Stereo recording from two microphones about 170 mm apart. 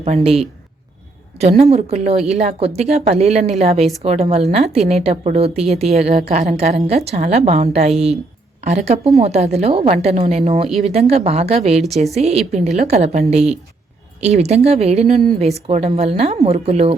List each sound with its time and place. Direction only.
0.0 s a woman's voice: 35° right (ahead or behind)